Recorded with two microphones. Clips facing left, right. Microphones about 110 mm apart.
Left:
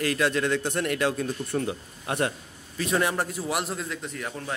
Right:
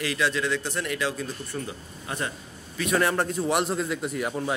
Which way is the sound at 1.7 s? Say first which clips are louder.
Left 5 dB; 65° left (ahead or behind).